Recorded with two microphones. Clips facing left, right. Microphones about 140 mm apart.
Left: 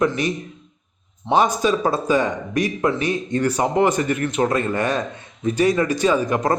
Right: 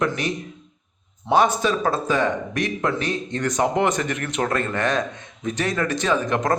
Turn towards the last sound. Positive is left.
turn(degrees=10)  # may be behind; listen again after turning